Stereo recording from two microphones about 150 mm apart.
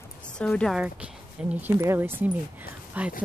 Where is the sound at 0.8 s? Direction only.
10° right (ahead or behind).